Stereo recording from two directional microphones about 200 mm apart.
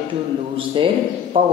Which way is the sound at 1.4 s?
25° right (ahead or behind).